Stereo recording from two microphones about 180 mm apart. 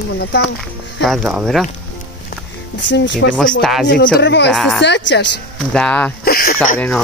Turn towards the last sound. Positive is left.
turn(degrees=5)  # may be behind; listen again after turning